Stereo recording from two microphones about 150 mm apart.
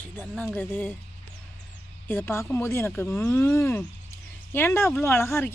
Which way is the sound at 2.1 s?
15° left (ahead or behind).